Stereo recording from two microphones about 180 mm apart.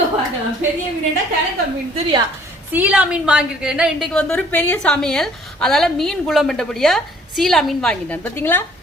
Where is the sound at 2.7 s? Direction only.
10° right (ahead or behind).